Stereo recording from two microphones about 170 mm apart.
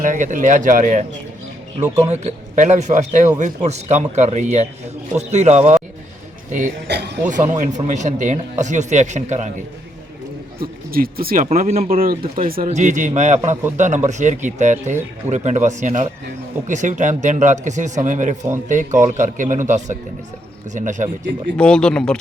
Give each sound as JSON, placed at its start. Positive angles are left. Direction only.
{"t": 0.0, "sound": "a man's voice", "side_deg": -50}
{"t": 6.8, "sound": "speech", "side_deg": -80}
{"t": 7.3, "sound": "speech", "side_deg": -45}
{"t": 10.6, "sound": "speech", "side_deg": -60}
{"t": 11.5, "sound": "speech", "side_deg": -45}
{"t": 11.9, "sound": "speech", "side_deg": -60}
{"t": 12.6, "sound": "speech", "side_deg": -45}
{"t": 21.6, "sound": "speech", "side_deg": 5}